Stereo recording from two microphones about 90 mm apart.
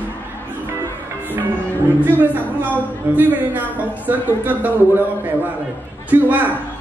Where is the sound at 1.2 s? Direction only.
20° right (ahead or behind).